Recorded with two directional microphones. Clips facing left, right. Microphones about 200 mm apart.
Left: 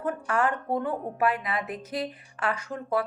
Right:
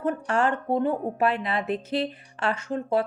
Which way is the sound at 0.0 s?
25° right (ahead or behind).